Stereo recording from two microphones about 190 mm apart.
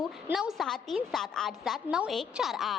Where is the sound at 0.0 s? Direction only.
Centre (ahead or behind).